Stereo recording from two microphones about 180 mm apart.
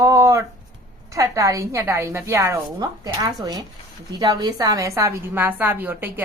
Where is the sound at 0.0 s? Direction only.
20° right (ahead or behind).